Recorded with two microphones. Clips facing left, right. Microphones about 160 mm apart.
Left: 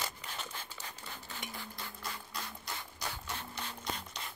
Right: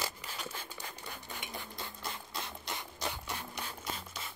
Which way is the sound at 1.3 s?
20° right (ahead or behind).